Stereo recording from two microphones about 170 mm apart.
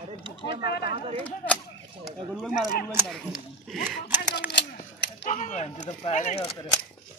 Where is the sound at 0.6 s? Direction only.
70° left (ahead or behind).